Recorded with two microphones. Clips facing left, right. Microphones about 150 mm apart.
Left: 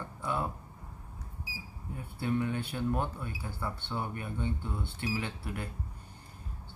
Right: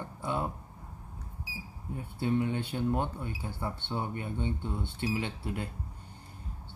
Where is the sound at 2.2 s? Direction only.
20° right (ahead or behind).